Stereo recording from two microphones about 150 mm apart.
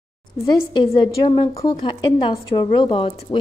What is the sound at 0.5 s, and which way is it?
A woman's voice, 30° left (ahead or behind).